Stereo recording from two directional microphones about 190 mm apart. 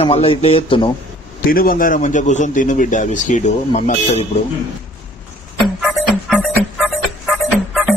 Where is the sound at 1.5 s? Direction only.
50° left (ahead or behind).